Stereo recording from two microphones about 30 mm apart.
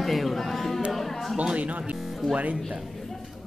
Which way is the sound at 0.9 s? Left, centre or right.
Centre.